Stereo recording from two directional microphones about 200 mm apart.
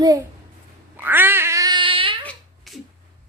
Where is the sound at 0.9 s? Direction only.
10° right (ahead or behind); by 2.2 s 25° right (ahead or behind).